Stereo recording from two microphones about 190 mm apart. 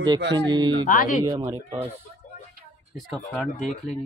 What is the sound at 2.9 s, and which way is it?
Speech, centre (ahead or behind).